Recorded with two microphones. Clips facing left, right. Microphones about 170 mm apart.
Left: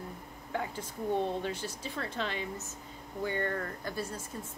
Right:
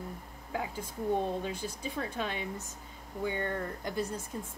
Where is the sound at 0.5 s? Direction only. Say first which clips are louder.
Even; 5° right (ahead or behind).